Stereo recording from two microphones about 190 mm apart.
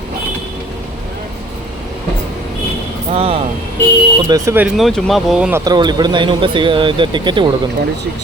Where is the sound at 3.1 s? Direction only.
30° right (ahead or behind).